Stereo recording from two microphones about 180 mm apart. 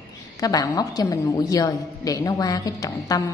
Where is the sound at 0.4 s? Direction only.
20° left (ahead or behind).